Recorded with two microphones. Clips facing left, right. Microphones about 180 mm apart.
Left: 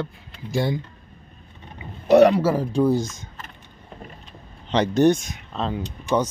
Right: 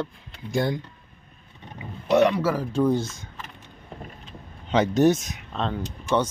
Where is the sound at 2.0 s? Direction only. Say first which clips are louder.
Left 5 dB; 35° left (ahead or behind).